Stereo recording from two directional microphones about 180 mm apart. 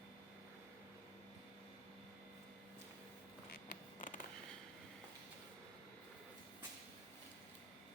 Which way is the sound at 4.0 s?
45° left (ahead or behind).